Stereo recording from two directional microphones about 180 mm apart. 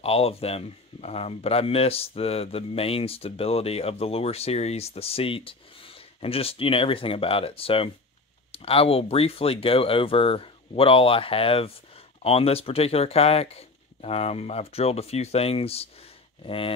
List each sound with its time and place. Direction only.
0.0 s speech: 35° left (ahead or behind)